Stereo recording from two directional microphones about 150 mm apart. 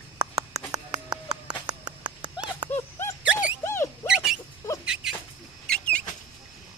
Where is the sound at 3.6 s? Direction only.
15° left (ahead or behind).